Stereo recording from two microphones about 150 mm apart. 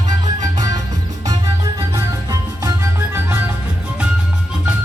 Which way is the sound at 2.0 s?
20° right (ahead or behind).